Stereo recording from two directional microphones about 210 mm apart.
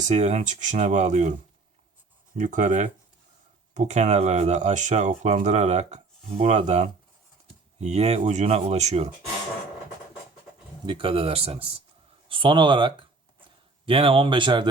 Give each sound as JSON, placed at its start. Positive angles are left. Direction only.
{"t": 0.1, "sound": "speech", "side_deg": -30}
{"t": 2.4, "sound": "speech", "side_deg": -35}
{"t": 10.8, "sound": "speech", "side_deg": -25}